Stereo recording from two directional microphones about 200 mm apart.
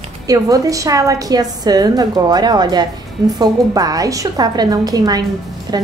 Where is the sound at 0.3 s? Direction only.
20° right (ahead or behind).